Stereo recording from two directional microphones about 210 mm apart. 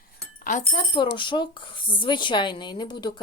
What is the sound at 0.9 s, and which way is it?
Speech, 25° left (ahead or behind).